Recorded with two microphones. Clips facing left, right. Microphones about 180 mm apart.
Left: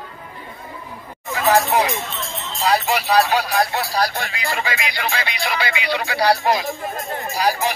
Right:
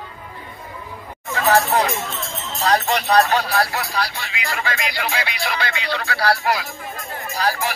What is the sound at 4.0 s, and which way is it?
Speech, 45° left (ahead or behind).